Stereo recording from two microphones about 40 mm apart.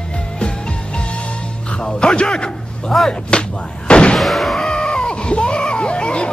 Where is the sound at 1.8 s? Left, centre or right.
Left.